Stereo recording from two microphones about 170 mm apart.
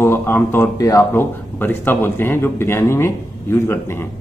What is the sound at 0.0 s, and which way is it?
Speech, 15° left (ahead or behind).